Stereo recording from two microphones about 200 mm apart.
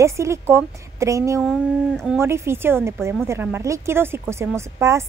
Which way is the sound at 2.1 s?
15° right (ahead or behind).